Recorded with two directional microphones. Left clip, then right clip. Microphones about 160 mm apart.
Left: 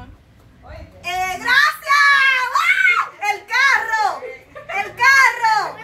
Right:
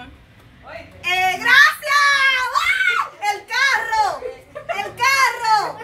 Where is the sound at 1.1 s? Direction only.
5° right (ahead or behind).